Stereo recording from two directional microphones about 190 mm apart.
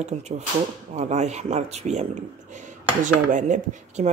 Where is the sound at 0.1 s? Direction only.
35° right (ahead or behind).